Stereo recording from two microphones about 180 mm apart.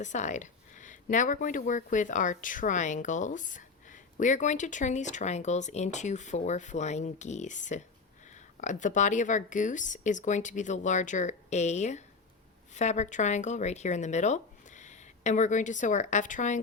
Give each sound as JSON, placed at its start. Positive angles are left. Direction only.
{"t": 0.0, "sound": "speech", "side_deg": 40}